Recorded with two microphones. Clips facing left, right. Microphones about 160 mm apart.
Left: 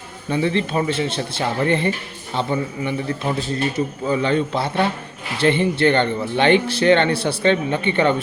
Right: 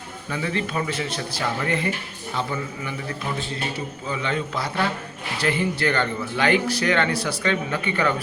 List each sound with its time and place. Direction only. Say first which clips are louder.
0.3 s speech: left 7 dB; 25° left (ahead or behind)
4.1 s a man's voice: left 7 dB; 35° left (ahead or behind)